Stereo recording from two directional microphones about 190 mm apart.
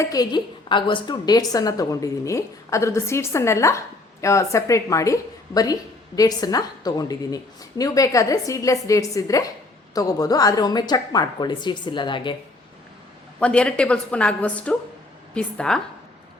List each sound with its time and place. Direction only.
0.0 s a woman's voice: 20° left (ahead or behind)
13.4 s a woman's voice: 5° left (ahead or behind)